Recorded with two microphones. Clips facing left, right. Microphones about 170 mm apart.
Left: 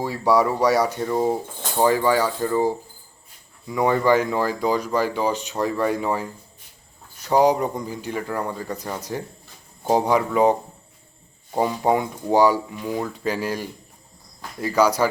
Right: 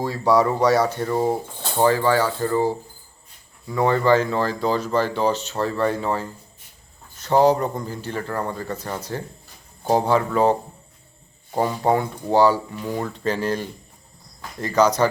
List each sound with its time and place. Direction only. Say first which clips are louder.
0.0 s speech: right 1 dB; 10° left (ahead or behind)
11.5 s speech: even; 10° left (ahead or behind)